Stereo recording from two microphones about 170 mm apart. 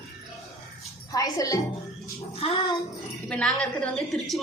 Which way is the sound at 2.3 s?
35° left (ahead or behind).